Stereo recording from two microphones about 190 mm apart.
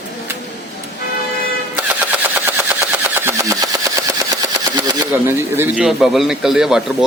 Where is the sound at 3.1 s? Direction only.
15° right (ahead or behind).